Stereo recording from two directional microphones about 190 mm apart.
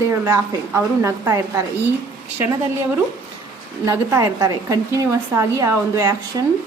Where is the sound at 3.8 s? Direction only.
15° right (ahead or behind).